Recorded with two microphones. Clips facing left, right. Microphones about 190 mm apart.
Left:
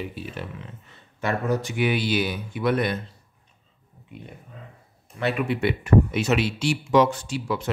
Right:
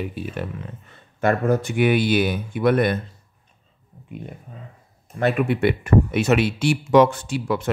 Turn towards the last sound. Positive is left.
turn(degrees=-55)  # may be behind; listen again after turning